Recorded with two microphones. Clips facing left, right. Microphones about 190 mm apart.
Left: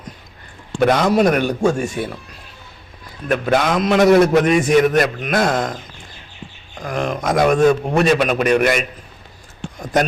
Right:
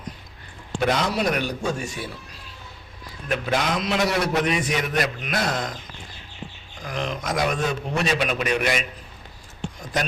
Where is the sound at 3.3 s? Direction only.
55° left (ahead or behind).